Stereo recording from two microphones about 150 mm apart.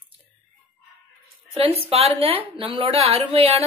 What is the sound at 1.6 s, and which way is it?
A woman's voice, 40° right (ahead or behind).